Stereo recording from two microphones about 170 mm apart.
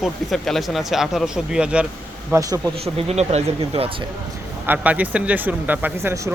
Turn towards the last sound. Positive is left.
turn(degrees=-15)  # may be behind; listen again after turning